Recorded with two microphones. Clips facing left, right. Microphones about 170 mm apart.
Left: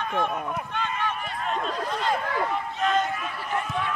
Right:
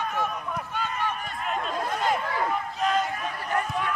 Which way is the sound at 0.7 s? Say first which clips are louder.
Right 1 dB; 10° right (ahead or behind).